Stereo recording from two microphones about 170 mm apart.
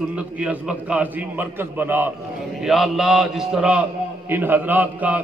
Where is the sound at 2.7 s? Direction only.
Centre (ahead or behind).